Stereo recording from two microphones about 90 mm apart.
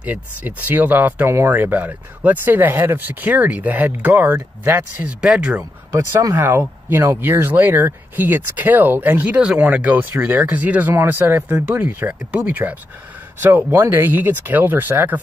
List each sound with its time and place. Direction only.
0.0 s speech: 15° right (ahead or behind)
5.9 s speech: 40° right (ahead or behind)
6.3 s speech: 25° right (ahead or behind)